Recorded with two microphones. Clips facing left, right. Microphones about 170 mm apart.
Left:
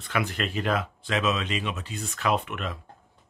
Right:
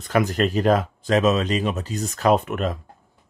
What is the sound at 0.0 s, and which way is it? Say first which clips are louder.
Speech: right 8 dB; 40° right (ahead or behind).